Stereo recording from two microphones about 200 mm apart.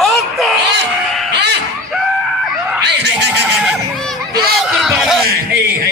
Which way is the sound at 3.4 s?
Centre (ahead or behind).